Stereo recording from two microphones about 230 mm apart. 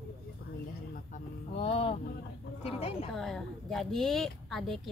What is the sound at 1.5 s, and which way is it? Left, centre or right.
A woman's voice, left.